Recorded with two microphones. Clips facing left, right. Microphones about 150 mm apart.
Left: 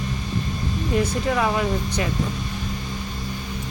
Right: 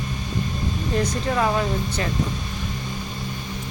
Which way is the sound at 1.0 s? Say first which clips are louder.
Left 1 dB; 10° left (ahead or behind).